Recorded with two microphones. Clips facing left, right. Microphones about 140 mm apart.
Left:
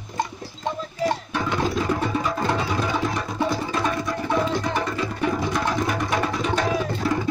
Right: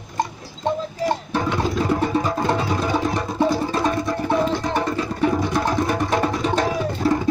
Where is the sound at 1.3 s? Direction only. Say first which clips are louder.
Right 4 dB; 30° right (ahead or behind).